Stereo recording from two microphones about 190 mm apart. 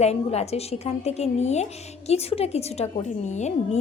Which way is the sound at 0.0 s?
35° left (ahead or behind).